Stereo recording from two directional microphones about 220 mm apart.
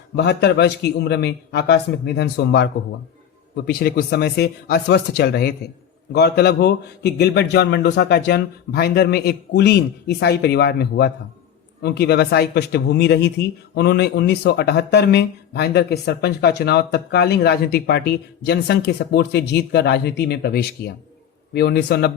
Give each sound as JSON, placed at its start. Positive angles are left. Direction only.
{"t": 0.2, "sound": "speech", "side_deg": 50}